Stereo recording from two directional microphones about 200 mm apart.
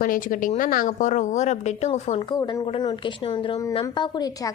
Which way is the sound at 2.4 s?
15° left (ahead or behind).